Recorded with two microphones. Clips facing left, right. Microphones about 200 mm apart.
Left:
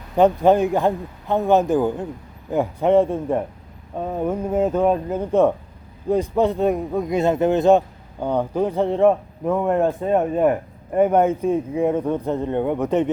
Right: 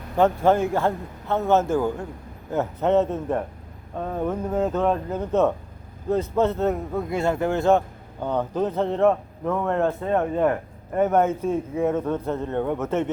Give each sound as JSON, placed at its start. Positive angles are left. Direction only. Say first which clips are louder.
{"t": 0.2, "sound": "speech", "louder": "left 4 dB", "side_deg": 15}